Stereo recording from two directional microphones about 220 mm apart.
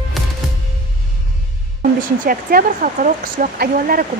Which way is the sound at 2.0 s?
40° right (ahead or behind).